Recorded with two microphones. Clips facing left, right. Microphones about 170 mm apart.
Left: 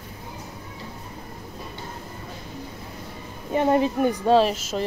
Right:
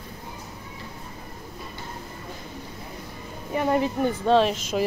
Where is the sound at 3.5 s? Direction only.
25° left (ahead or behind).